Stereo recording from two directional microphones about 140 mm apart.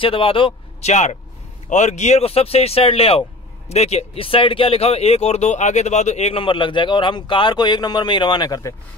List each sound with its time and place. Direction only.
0.0 s speech: 40° left (ahead or behind)
6.4 s speech: 35° left (ahead or behind)